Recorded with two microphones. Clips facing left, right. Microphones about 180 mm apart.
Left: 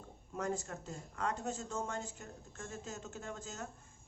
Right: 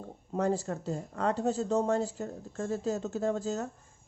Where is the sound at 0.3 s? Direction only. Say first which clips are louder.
Right 9 dB; 35° right (ahead or behind).